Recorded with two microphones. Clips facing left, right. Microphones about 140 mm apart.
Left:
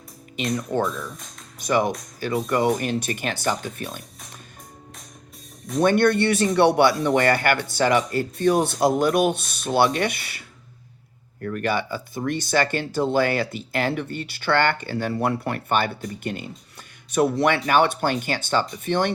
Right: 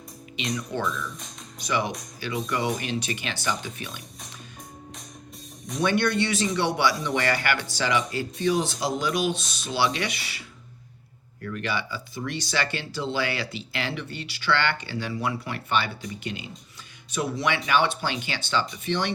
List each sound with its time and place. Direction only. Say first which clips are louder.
0.3 s speech: left 6 dB; 50° left (ahead or behind)
1.5 s speech: left 6 dB; 50° left (ahead or behind)
5.7 s speech: left 6 dB; 50° left (ahead or behind)
11.4 s speech: left 6 dB; 50° left (ahead or behind)